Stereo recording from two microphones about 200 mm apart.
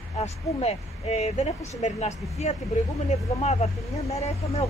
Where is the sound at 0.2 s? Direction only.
30° left (ahead or behind).